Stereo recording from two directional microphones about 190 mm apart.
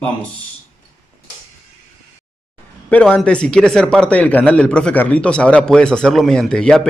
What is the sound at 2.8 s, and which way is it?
A man's voice, 5° left (ahead or behind).